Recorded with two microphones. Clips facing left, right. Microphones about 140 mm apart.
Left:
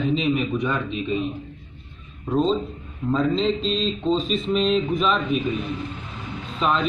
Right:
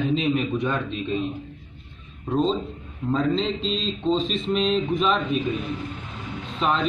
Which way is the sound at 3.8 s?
Centre (ahead or behind).